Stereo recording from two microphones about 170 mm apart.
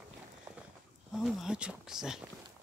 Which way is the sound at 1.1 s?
Centre (ahead or behind).